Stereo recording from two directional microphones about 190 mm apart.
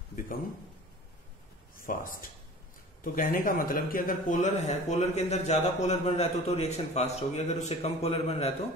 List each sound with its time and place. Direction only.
1.9 s a man's voice: 45° left (ahead or behind)